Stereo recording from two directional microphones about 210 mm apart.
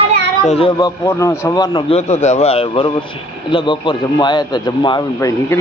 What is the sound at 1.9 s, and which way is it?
A man's voice, 30° left (ahead or behind).